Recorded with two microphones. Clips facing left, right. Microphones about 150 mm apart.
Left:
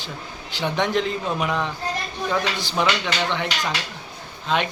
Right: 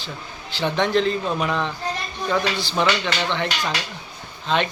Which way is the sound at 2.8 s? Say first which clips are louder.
Right 1 dB; 10° left (ahead or behind).